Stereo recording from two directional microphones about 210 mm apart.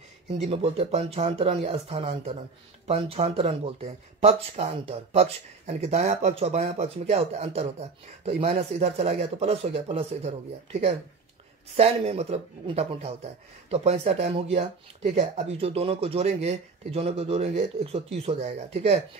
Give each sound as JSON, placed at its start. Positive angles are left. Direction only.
{"t": 0.4, "sound": "speech", "side_deg": -30}